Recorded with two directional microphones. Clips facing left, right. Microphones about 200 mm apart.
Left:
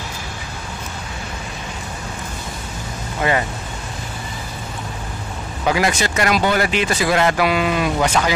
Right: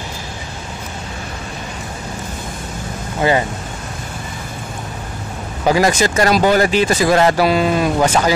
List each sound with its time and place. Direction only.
3.2 s speech: 25° right (ahead or behind)
5.7 s speech: 40° right (ahead or behind)